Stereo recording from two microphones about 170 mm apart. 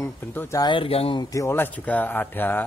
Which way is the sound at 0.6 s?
30° left (ahead or behind).